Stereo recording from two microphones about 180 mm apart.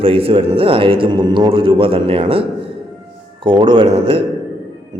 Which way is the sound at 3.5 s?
30° right (ahead or behind).